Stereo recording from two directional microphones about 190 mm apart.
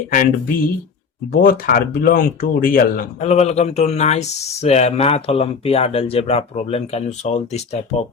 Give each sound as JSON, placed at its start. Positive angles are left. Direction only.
{"t": 0.1, "sound": "speech", "side_deg": 45}
{"t": 3.2, "sound": "speech", "side_deg": 35}